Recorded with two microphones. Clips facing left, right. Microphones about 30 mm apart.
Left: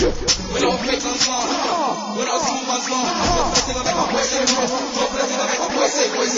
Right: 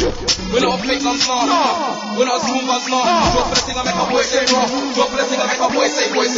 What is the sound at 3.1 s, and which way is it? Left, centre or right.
Music, right.